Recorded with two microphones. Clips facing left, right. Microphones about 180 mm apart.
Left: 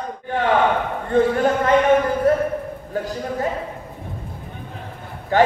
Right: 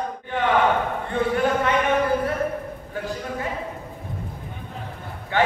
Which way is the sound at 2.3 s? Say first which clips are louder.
Left 7 dB; 40° left (ahead or behind).